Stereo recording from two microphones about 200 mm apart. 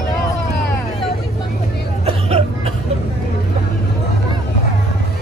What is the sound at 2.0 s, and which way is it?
Hubbub, 30° right (ahead or behind).